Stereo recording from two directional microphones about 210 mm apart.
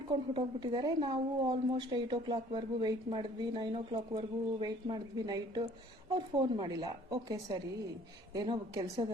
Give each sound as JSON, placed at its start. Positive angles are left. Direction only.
{"t": 0.1, "sound": "a woman's voice", "side_deg": -20}